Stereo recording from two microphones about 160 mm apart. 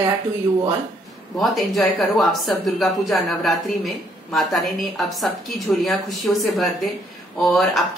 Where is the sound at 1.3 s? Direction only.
Centre (ahead or behind).